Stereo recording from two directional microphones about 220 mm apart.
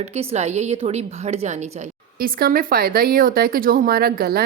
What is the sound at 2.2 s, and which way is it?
Speech, 40° right (ahead or behind).